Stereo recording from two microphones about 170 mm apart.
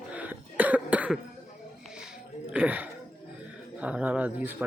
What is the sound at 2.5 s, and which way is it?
Speech, 10° right (ahead or behind).